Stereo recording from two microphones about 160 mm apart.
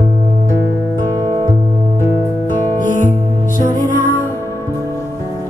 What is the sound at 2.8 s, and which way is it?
Music, 55° left (ahead or behind).